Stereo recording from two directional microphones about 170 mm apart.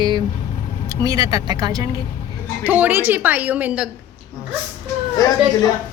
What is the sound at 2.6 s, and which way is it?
A woman's voice, 10° right (ahead or behind).